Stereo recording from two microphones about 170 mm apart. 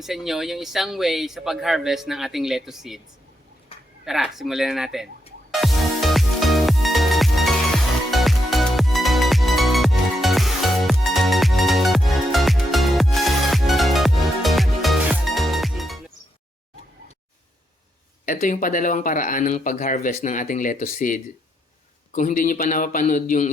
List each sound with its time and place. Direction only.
0.0 s speech: centre (ahead or behind)
3.7 s a sound: 30° left (ahead or behind)
4.0 s speech: centre (ahead or behind)
5.5 s music: centre (ahead or behind)
18.3 s speech: 50° left (ahead or behind)